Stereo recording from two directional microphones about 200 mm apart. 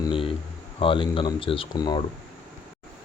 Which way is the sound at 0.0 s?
25° left (ahead or behind).